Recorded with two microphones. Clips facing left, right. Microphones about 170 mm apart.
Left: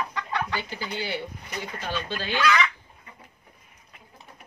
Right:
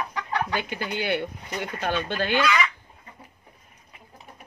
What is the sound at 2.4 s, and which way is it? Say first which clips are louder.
Speech: left 1 dB; 10° right (ahead or behind).